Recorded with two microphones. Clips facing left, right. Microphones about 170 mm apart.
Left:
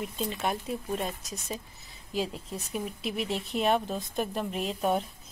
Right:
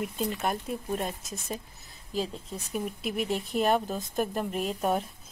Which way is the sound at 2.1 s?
Centre (ahead or behind).